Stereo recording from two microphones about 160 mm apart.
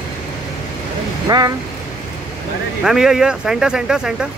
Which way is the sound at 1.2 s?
25° right (ahead or behind).